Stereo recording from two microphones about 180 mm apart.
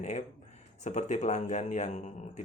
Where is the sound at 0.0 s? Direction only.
40° left (ahead or behind).